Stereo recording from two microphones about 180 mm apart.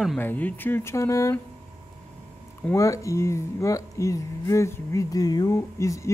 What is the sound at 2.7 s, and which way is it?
A man's voice, 15° left (ahead or behind).